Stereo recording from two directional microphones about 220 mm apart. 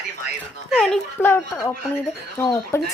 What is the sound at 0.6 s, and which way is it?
A child's voice, centre (ahead or behind).